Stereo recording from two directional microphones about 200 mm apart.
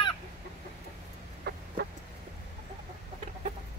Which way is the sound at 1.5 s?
55° right (ahead or behind).